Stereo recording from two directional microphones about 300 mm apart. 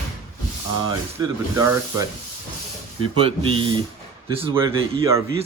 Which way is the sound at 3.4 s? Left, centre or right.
Centre.